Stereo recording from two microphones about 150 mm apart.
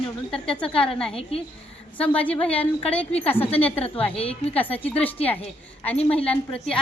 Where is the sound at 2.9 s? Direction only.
40° left (ahead or behind).